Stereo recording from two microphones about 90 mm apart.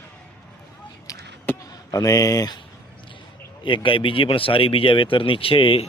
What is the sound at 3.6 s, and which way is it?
Speech, 65° left (ahead or behind).